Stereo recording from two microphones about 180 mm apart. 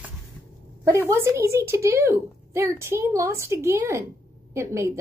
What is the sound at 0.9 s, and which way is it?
Speech, 15° right (ahead or behind).